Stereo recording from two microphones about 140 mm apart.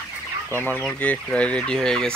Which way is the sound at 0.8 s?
10° left (ahead or behind).